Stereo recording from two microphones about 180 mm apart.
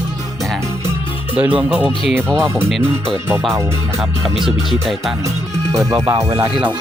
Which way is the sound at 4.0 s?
Centre (ahead or behind).